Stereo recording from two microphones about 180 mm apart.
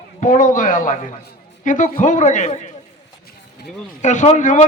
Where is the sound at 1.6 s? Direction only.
45° left (ahead or behind).